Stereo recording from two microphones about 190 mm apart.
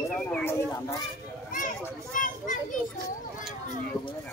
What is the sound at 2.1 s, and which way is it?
Children playing, 45° left (ahead or behind).